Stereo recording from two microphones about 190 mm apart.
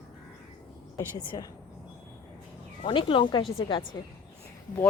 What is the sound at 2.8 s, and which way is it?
Speech, 25° left (ahead or behind).